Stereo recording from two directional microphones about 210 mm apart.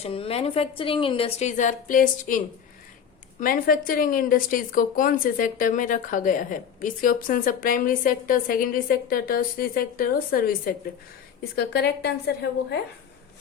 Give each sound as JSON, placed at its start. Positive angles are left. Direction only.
{"t": 0.0, "sound": "a woman's voice", "side_deg": 25}
{"t": 3.4, "sound": "a woman's voice", "side_deg": 40}